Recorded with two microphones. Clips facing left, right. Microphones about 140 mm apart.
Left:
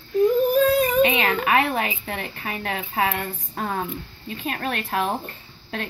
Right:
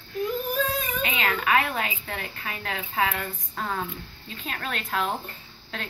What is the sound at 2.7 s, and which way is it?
Speech, 45° left (ahead or behind).